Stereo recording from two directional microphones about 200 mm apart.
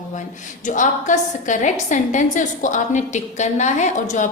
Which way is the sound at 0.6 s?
40° left (ahead or behind).